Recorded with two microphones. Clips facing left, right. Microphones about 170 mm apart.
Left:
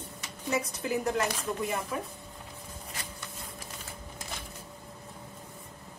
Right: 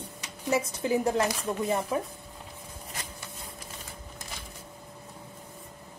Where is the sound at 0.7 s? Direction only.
30° right (ahead or behind).